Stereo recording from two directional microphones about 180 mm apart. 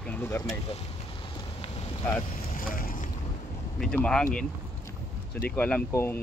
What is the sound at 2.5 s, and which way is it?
Vehicle, 50° left (ahead or behind).